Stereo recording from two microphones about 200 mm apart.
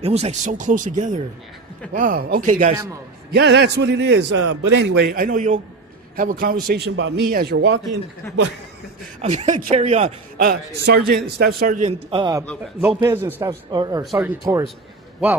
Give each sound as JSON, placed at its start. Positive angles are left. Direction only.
{"t": 0.0, "sound": "a man's voice", "side_deg": -30}
{"t": 3.3, "sound": "a man's voice", "side_deg": -55}
{"t": 6.7, "sound": "a man's voice", "side_deg": -55}
{"t": 9.2, "sound": "speech", "side_deg": -35}
{"t": 10.4, "sound": "a man's voice", "side_deg": -50}
{"t": 12.1, "sound": "a man's voice", "side_deg": -20}